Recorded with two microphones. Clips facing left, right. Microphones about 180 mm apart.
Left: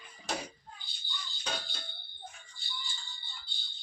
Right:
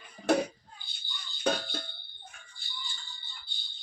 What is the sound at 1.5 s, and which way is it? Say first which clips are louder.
Music: right 11 dB; 55° right (ahead or behind).